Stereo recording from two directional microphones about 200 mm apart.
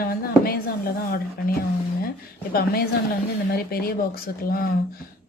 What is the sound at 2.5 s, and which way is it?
A woman's voice, 50° left (ahead or behind).